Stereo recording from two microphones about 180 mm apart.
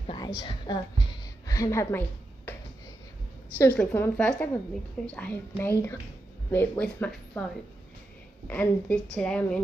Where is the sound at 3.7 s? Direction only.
10° left (ahead or behind).